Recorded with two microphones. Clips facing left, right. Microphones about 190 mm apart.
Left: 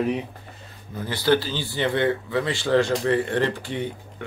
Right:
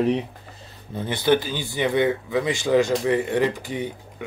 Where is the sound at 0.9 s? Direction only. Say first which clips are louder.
Right 1 dB; 20° right (ahead or behind).